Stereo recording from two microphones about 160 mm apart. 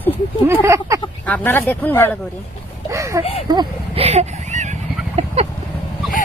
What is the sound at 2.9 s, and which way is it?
Speech, 20° right (ahead or behind).